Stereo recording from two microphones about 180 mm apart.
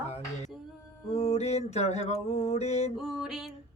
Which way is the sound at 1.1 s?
35° left (ahead or behind).